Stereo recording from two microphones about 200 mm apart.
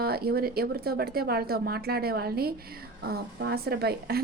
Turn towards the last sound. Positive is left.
turn(degrees=-50)  # may be behind; listen again after turning